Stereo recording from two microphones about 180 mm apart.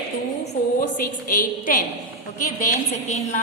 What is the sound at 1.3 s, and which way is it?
A woman's voice, 50° left (ahead or behind).